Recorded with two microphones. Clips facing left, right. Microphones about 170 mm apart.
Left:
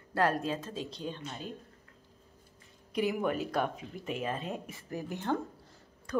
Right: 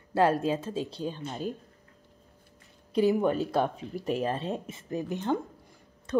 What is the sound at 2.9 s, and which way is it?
Speech, 30° right (ahead or behind).